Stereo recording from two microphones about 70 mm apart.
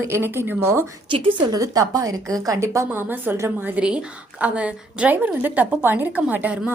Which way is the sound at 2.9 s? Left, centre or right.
Right.